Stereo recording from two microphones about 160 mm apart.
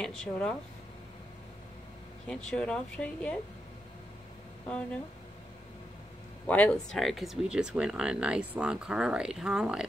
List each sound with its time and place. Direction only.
0.0 s speech: 5° left (ahead or behind)
2.2 s speech: 5° left (ahead or behind)
6.4 s speech: 10° left (ahead or behind)